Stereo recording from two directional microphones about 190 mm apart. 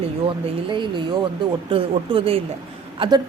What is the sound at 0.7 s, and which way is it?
Speech, 25° right (ahead or behind).